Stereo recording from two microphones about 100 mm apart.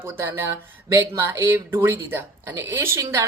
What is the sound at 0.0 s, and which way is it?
Speech, 25° right (ahead or behind).